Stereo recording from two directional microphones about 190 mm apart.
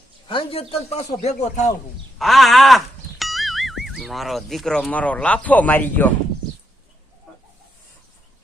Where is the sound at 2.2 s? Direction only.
Centre (ahead or behind).